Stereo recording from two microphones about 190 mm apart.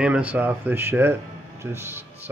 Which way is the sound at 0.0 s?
10° right (ahead or behind).